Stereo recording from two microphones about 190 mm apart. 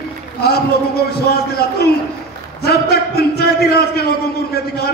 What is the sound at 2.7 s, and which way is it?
A man's voice, 55° left (ahead or behind).